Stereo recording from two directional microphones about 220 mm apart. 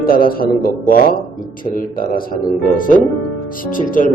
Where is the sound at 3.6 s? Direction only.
40° left (ahead or behind).